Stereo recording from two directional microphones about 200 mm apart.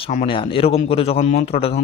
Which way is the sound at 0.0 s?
30° left (ahead or behind).